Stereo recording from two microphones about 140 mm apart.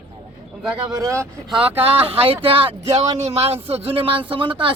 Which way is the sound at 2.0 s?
40° right (ahead or behind).